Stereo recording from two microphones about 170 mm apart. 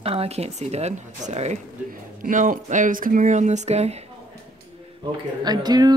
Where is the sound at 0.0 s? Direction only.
35° right (ahead or behind).